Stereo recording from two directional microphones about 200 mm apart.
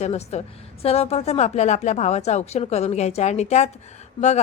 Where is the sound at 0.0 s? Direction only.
30° left (ahead or behind).